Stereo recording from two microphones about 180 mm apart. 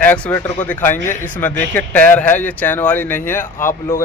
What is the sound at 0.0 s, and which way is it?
Speech, 10° left (ahead or behind).